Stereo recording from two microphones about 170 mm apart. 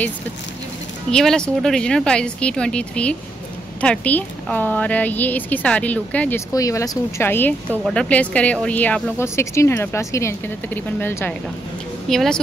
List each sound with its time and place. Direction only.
1.1 s speech: 5° left (ahead or behind)
6.5 s speech: 20° left (ahead or behind); by 12.4 s centre (ahead or behind)